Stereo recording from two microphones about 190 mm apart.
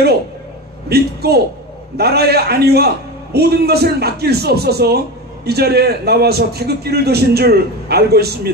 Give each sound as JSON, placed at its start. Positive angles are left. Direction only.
{"t": 0.8, "sound": "a man's voice", "side_deg": -55}